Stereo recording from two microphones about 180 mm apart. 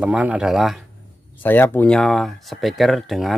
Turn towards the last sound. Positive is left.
turn(degrees=0)  # may be behind; listen again after turning